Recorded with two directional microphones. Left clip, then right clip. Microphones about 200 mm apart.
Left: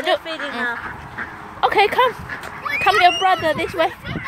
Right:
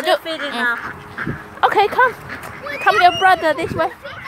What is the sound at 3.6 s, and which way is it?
Speech, 5° left (ahead or behind).